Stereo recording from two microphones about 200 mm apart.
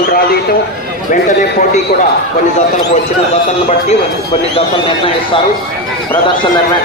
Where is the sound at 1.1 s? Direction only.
40° left (ahead or behind).